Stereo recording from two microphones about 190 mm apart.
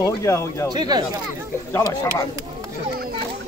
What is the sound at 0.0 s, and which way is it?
Speech, 15° left (ahead or behind).